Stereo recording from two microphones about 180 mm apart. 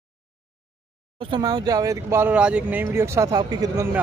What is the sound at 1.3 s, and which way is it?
Speech, 20° right (ahead or behind).